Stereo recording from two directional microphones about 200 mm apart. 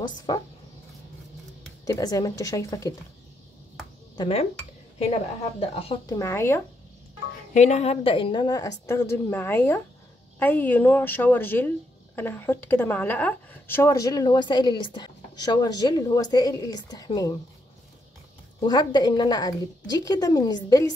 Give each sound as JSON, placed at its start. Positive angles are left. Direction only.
{"t": 0.0, "sound": "a woman's voice", "side_deg": 20}
{"t": 1.9, "sound": "a woman's voice", "side_deg": 20}
{"t": 4.2, "sound": "a woman's voice", "side_deg": 30}
{"t": 5.6, "sound": "a woman's voice", "side_deg": 30}
{"t": 6.0, "sound": "a woman's voice", "side_deg": 15}
{"t": 7.5, "sound": "a woman's voice", "side_deg": 35}
{"t": 18.6, "sound": "a woman's voice", "side_deg": 20}